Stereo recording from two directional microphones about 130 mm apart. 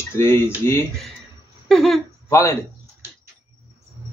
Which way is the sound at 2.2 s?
20° left (ahead or behind).